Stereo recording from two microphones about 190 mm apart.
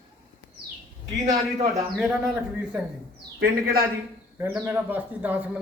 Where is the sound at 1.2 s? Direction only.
40° right (ahead or behind).